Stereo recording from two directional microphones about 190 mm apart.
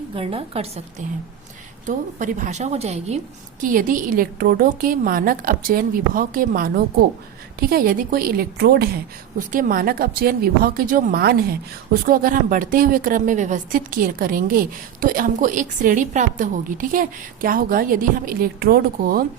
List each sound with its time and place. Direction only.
0.1 s a woman's voice: 30° right (ahead or behind)
3.6 s a woman's voice: 45° right (ahead or behind)
9.5 s a woman's voice: 45° right (ahead or behind)